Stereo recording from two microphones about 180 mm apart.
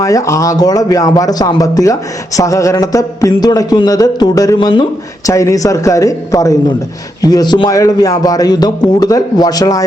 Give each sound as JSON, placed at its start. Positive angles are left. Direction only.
{"t": 0.0, "sound": "a man's voice", "side_deg": 20}